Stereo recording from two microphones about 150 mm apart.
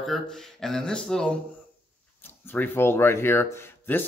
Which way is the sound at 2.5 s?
15° left (ahead or behind).